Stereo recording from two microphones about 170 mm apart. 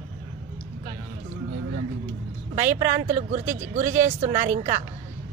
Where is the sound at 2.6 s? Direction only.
45° right (ahead or behind).